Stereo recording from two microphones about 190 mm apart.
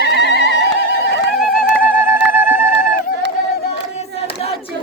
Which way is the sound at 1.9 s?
10° right (ahead or behind).